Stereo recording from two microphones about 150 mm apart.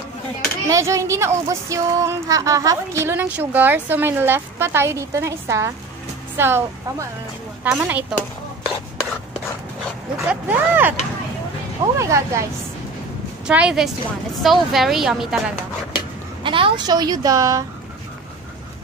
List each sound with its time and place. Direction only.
0.7 s a woman's voice: 20° right (ahead or behind)
10.3 s a woman's voice: 10° right (ahead or behind)
13.5 s a woman's voice: 5° right (ahead or behind)
16.4 s speech: 35° right (ahead or behind)